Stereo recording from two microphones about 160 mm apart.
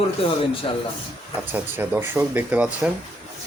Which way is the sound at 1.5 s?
10° right (ahead or behind).